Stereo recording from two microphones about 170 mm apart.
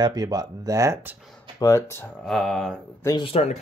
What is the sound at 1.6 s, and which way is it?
Speech, 15° left (ahead or behind).